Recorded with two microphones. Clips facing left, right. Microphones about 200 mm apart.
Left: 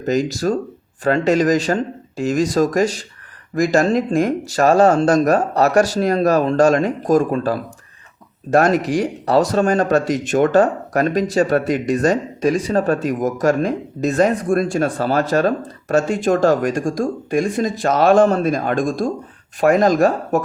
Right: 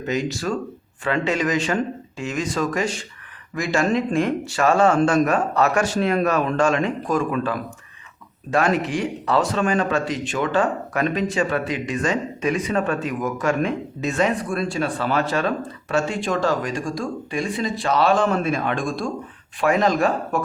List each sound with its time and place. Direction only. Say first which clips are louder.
0.0 s speech: left 6 dB; 40° left (ahead or behind)